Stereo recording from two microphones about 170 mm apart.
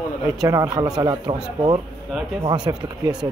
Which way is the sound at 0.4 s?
20° right (ahead or behind).